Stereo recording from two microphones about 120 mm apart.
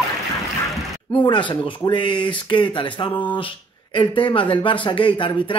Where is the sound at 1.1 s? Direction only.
40° left (ahead or behind).